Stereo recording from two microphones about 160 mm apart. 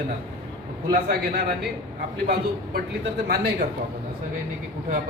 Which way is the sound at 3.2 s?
85° right.